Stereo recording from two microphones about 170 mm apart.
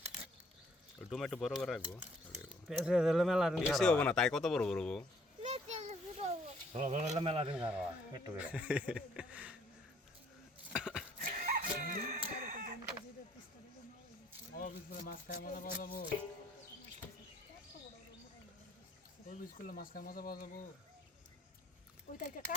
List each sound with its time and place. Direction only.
0.9 s speech: centre (ahead or behind)
5.4 s a sound: 40° right (ahead or behind)
6.7 s speech: 45° right (ahead or behind)
7.5 s speech: 5° right (ahead or behind)
10.8 s a sound: 5° right (ahead or behind)
11.2 s chicken: 60° right (ahead or behind)
14.5 s speech: 60° left (ahead or behind)
19.3 s speech: 55° left (ahead or behind)
22.1 s speech: 50° left (ahead or behind)